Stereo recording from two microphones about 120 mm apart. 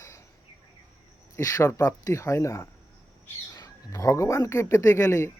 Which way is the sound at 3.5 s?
25° left (ahead or behind).